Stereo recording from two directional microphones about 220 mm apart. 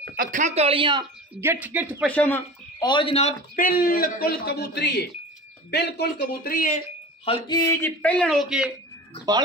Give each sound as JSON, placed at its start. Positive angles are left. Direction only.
{"t": 0.1, "sound": "speech", "side_deg": -40}
{"t": 1.4, "sound": "speech", "side_deg": -10}
{"t": 2.0, "sound": "speech", "side_deg": 10}
{"t": 2.8, "sound": "a man's voice", "side_deg": 20}
{"t": 7.2, "sound": "a sound", "side_deg": 20}
{"t": 8.0, "sound": "a man's voice", "side_deg": 5}